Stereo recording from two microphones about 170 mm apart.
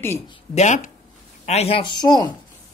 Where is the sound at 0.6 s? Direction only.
45° left (ahead or behind).